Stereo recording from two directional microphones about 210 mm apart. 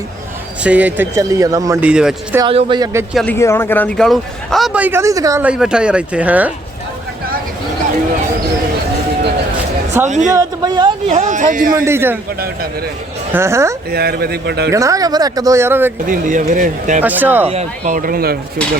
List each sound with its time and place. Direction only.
0.6 s speech: 5° right (ahead or behind)
2.4 s speech: 25° right (ahead or behind)
3.2 s a man's voice: 10° left (ahead or behind); by 6.5 s 5° right (ahead or behind)
10.2 s speech: 15° right (ahead or behind)
11.1 s speech: 35° right (ahead or behind)
11.7 s speech: 15° right (ahead or behind)
13.3 s speech: 10° right (ahead or behind)
13.9 s speech: 45° right (ahead or behind)
14.7 s speech: 15° right (ahead or behind)
16.0 s speech: 40° right (ahead or behind)
17.0 s speech: 10° right (ahead or behind)
17.5 s speech: 35° right (ahead or behind)